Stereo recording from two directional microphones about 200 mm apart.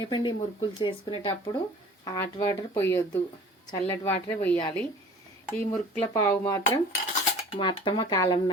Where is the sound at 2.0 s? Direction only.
15° left (ahead or behind).